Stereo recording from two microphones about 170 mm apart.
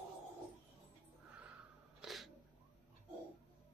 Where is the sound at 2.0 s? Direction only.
Centre (ahead or behind).